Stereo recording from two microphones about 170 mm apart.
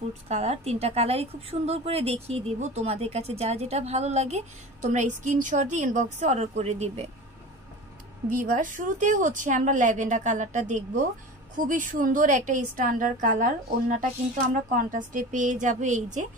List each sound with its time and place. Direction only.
0.3 s a woman's voice: 40° right (ahead or behind)
8.3 s a woman's voice: 50° right (ahead or behind)